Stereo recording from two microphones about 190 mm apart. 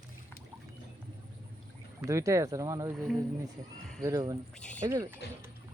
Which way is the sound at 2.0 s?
15° right (ahead or behind).